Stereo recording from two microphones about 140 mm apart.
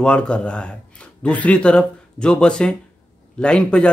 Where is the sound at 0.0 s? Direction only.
5° left (ahead or behind).